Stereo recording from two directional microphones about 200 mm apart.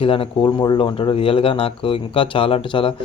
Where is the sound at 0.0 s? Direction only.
25° left (ahead or behind).